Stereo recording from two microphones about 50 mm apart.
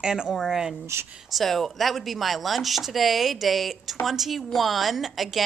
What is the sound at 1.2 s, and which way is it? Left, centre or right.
Chopping, centre.